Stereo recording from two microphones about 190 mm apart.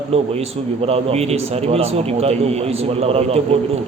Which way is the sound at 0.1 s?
30° right (ahead or behind).